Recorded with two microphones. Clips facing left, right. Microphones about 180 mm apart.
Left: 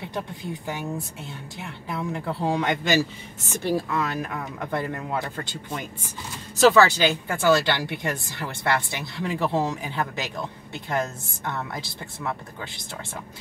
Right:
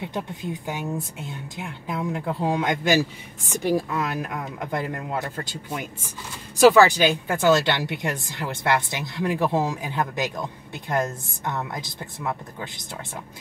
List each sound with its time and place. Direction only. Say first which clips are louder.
0.0 s speech: right 2 dB; 15° right (ahead or behind)